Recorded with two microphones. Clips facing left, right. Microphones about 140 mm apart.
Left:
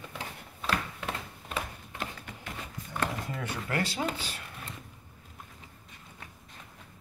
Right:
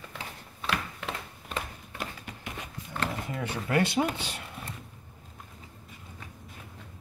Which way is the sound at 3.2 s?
20° right (ahead or behind).